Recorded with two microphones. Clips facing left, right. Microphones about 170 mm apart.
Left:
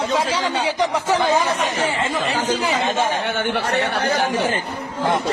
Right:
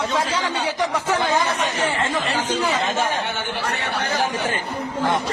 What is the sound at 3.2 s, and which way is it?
Speech, 55° left (ahead or behind).